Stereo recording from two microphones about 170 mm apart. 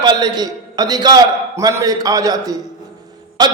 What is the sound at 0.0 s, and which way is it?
A man's voice, 25° right (ahead or behind).